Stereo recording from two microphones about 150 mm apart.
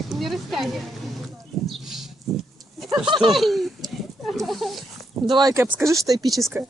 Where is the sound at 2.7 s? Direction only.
Centre (ahead or behind).